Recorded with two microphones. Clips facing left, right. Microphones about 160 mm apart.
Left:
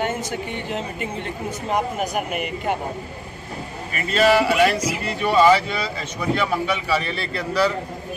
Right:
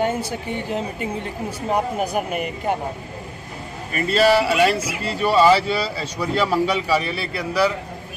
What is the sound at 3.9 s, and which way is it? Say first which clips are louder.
Speech: right 1 dB; 35° right (ahead or behind).